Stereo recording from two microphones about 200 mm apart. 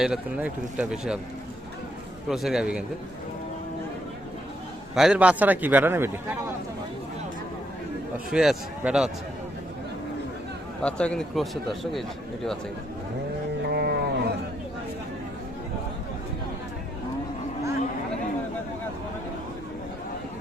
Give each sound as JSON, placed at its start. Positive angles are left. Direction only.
{"t": 0.0, "sound": "speech", "side_deg": -5}
{"t": 2.3, "sound": "speech", "side_deg": 0}
{"t": 4.9, "sound": "a man's voice", "side_deg": -5}
{"t": 8.3, "sound": "speech", "side_deg": -5}
{"t": 10.8, "sound": "speech", "side_deg": 5}
{"t": 13.7, "sound": "a sound", "side_deg": -55}